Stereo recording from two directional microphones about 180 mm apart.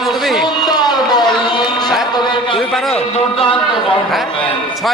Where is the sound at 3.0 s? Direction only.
30° left (ahead or behind).